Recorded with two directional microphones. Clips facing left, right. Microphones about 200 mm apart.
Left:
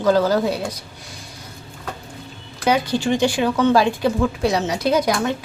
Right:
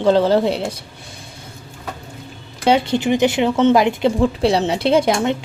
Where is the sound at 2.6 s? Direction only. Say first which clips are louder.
Right 3 dB; 25° right (ahead or behind).